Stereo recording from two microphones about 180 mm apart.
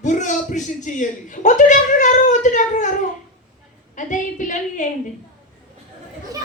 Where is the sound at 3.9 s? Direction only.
45° left (ahead or behind).